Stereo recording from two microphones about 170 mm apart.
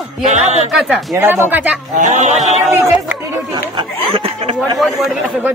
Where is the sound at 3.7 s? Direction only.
35° right (ahead or behind).